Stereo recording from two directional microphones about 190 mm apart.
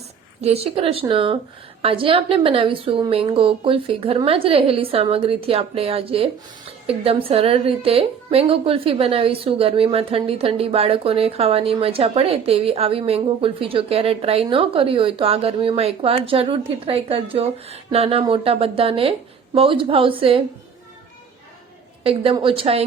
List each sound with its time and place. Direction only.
0.4 s a woman's voice: 30° right (ahead or behind)
22.0 s a woman's voice: 30° right (ahead or behind)